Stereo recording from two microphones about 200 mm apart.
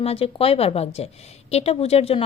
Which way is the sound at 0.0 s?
30° left (ahead or behind).